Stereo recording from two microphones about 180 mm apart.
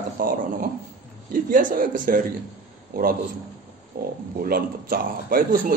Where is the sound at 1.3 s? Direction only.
50° right (ahead or behind).